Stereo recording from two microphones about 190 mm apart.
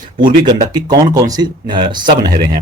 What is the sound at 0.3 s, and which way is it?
Speech, 25° right (ahead or behind).